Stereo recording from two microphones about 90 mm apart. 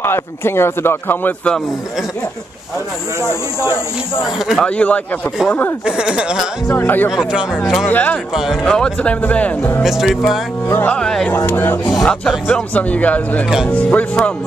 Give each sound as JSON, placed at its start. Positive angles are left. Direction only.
{"t": 0.0, "sound": "speech", "side_deg": 25}
{"t": 3.2, "sound": "speech", "side_deg": -35}
{"t": 4.2, "sound": "music", "side_deg": -5}
{"t": 4.6, "sound": "speech", "side_deg": 15}
{"t": 5.9, "sound": "speech", "side_deg": -10}
{"t": 6.8, "sound": "speech", "side_deg": 20}
{"t": 7.1, "sound": "speech", "side_deg": -5}
{"t": 7.8, "sound": "speech", "side_deg": 20}
{"t": 9.8, "sound": "music", "side_deg": -5}
{"t": 10.9, "sound": "speech", "side_deg": 10}
{"t": 11.2, "sound": "speech", "side_deg": 20}
{"t": 11.9, "sound": "music", "side_deg": 0}
{"t": 12.4, "sound": "speech", "side_deg": 15}